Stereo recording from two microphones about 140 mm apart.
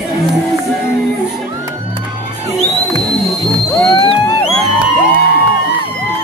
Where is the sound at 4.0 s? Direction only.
35° left (ahead or behind).